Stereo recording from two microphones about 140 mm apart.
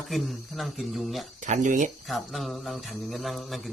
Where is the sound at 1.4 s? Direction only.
60° right (ahead or behind).